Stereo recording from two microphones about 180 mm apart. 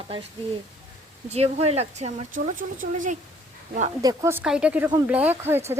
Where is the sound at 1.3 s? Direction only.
35° right (ahead or behind).